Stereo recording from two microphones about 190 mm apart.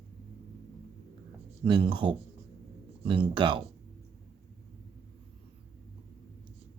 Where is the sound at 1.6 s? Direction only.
25° right (ahead or behind).